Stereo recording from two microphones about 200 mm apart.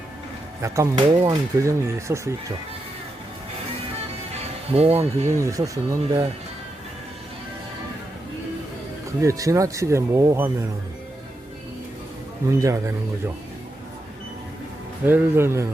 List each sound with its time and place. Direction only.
0.6 s speech: 15° right (ahead or behind)
4.3 s music: 30° right (ahead or behind)
5.3 s speech: 15° right (ahead or behind)
9.2 s speech: 15° right (ahead or behind)
12.5 s speech: 15° right (ahead or behind)
15.0 s speech: 10° right (ahead or behind)